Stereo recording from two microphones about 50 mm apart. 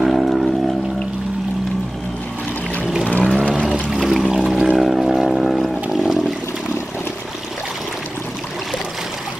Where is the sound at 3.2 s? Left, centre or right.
Centre.